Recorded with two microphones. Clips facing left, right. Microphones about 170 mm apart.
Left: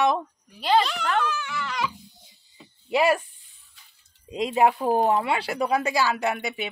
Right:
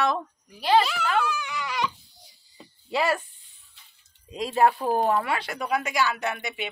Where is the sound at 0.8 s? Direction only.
5° right (ahead or behind).